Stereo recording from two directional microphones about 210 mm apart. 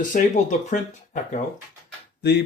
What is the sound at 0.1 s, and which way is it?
Speech, 40° left (ahead or behind).